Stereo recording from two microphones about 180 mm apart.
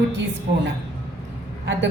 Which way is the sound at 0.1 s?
90° right.